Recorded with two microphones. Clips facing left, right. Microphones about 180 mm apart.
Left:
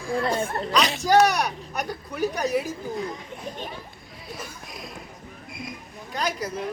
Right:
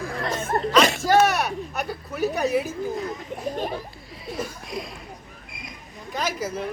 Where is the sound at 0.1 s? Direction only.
30° left (ahead or behind).